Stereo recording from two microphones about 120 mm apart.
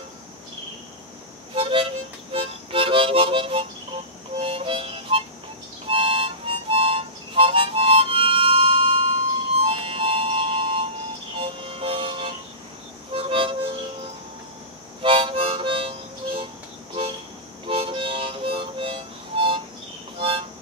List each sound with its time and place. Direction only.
1.5 s harmonica: 45° right (ahead or behind)
11.3 s music: 50° right (ahead or behind)
13.1 s harmonica: 50° right (ahead or behind)
15.0 s harmonica: 50° right (ahead or behind)
17.6 s harmonica: 50° right (ahead or behind)
20.2 s music: 50° right (ahead or behind)